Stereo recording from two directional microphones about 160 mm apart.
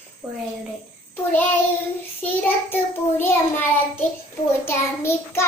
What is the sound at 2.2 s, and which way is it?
Child singing, 10° left (ahead or behind).